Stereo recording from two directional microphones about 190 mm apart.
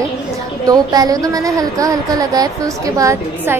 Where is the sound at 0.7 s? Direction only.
20° right (ahead or behind).